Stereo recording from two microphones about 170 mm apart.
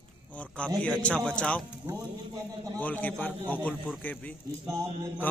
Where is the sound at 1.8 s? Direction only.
20° right (ahead or behind).